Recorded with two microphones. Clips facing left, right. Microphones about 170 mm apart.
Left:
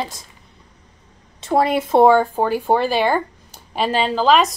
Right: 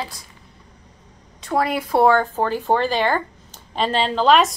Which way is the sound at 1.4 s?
25° left (ahead or behind).